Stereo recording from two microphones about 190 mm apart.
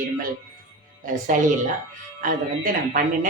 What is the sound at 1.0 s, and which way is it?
Speech, 40° right (ahead or behind).